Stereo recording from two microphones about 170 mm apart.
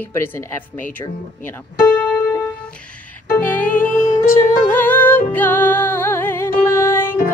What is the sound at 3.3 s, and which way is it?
Music, 10° left (ahead or behind).